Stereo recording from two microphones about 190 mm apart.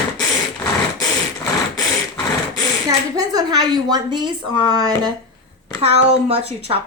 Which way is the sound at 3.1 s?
20° right (ahead or behind).